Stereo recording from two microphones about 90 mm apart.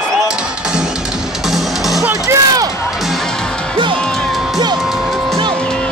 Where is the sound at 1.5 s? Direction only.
Centre (ahead or behind).